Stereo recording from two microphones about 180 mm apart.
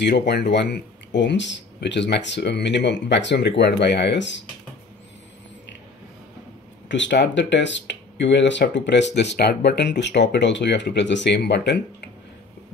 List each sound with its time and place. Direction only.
0.3 s speech: 70° left (ahead or behind)
6.9 s speech: 80° left